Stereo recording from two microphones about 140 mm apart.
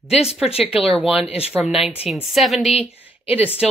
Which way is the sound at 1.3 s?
45° left (ahead or behind).